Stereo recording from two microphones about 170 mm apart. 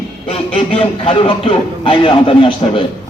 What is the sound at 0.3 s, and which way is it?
A man's voice, 35° left (ahead or behind).